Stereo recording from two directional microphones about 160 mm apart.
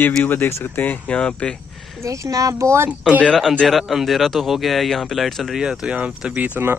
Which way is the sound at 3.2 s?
5° left (ahead or behind).